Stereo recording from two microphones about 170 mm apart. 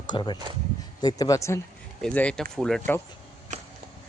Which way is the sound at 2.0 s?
5° left (ahead or behind).